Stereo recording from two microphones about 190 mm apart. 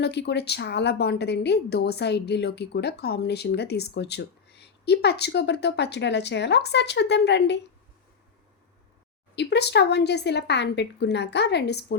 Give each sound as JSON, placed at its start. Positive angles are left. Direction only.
{"t": 0.0, "sound": "a woman's voice", "side_deg": 60}
{"t": 9.3, "sound": "a woman's voice", "side_deg": 60}